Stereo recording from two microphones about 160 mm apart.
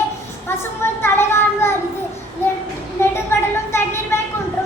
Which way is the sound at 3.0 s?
15° left (ahead or behind).